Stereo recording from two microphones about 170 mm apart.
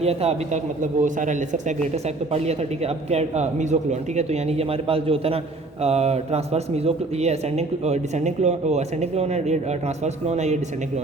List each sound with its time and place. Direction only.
0.0 s a man's voice: 40° right (ahead or behind)